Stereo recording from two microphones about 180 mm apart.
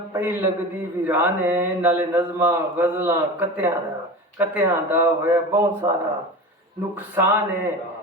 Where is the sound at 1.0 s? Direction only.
10° right (ahead or behind).